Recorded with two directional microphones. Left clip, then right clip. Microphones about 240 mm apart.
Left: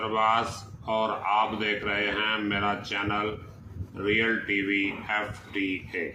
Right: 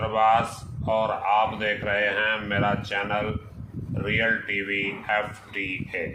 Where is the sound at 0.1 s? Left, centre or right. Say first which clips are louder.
Right 4 dB; right.